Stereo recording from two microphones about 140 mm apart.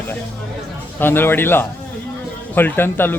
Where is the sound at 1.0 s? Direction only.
15° left (ahead or behind).